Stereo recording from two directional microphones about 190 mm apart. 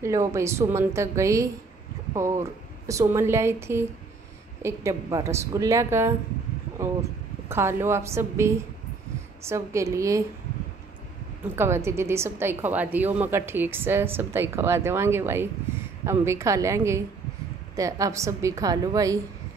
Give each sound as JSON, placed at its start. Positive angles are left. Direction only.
{"t": 0.0, "sound": "a woman's voice", "side_deg": -15}
{"t": 11.5, "sound": "a woman's voice", "side_deg": -15}